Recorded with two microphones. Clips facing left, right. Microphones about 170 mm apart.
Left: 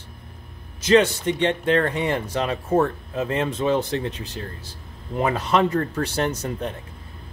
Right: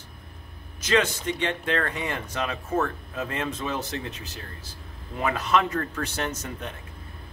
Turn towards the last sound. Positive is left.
turn(degrees=35)  # may be behind; listen again after turning